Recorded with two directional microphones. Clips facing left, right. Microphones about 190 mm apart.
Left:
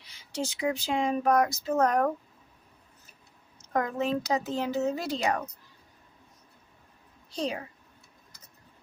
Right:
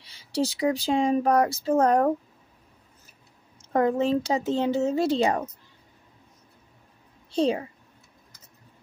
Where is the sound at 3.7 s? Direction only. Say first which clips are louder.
Right 6 dB; 30° right (ahead or behind).